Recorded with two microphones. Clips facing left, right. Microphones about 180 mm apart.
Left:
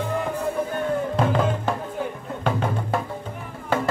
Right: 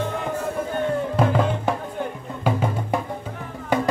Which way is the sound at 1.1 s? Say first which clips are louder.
Right 2 dB; 5° right (ahead or behind).